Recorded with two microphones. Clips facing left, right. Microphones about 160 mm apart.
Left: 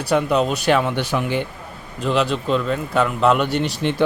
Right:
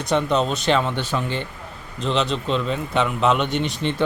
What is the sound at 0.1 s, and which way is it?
A man's voice, 10° left (ahead or behind).